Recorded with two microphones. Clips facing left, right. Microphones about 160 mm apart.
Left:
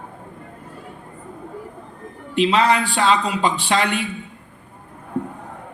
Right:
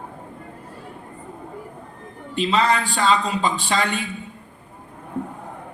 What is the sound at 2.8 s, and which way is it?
A man's voice, 10° left (ahead or behind).